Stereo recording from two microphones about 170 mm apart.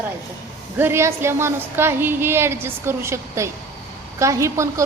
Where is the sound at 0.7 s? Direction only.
15° right (ahead or behind).